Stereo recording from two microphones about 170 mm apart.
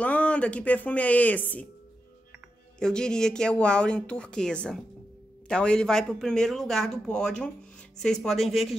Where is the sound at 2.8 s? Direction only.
5° left (ahead or behind).